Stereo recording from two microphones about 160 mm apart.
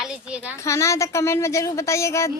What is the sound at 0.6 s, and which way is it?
A woman's voice, 20° left (ahead or behind).